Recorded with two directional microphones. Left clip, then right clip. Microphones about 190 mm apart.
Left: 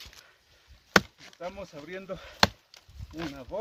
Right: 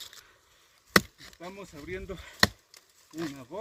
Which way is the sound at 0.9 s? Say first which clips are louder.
Left 1 dB; 10° right (ahead or behind).